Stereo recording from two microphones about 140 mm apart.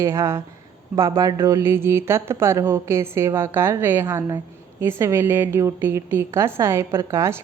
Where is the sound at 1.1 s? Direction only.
30° right (ahead or behind).